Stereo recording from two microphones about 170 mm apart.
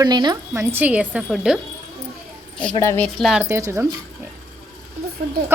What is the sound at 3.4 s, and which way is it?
Speech, 15° right (ahead or behind).